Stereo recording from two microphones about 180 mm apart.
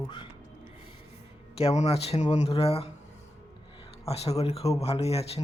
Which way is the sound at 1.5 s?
35° left (ahead or behind).